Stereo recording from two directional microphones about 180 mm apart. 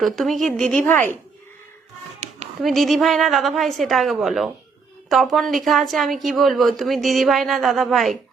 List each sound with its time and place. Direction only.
0.0 s a woman's voice: centre (ahead or behind)
2.6 s a woman's voice: centre (ahead or behind)